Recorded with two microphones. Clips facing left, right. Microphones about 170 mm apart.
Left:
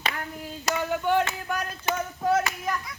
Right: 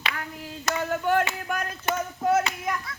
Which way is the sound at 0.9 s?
5° right (ahead or behind).